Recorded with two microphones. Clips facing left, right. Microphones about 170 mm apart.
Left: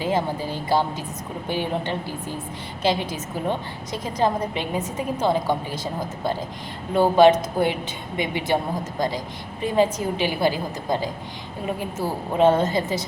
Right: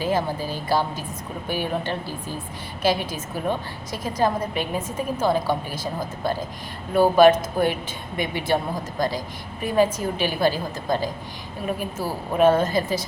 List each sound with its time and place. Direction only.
0.0 s a woman's voice: 20° left (ahead or behind)